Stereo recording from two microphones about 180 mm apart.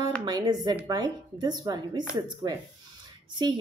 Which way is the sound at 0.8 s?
20° right (ahead or behind).